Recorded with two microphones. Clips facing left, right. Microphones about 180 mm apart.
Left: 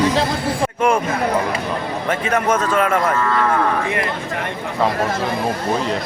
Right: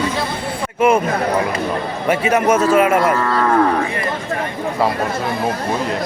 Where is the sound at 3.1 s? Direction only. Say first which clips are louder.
Right 1 dB; 35° right (ahead or behind).